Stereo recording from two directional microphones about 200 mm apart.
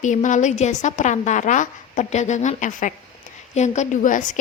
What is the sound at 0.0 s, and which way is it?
A woman's voice, 40° left (ahead or behind).